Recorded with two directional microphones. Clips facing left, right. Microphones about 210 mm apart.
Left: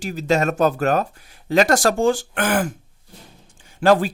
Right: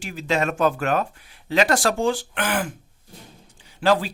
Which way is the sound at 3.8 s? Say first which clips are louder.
Left 4 dB; 50° left (ahead or behind).